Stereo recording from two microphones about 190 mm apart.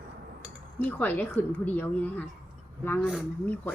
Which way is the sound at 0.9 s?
10° left (ahead or behind).